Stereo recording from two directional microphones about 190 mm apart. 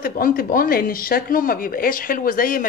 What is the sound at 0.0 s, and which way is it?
Speech, 50° left (ahead or behind).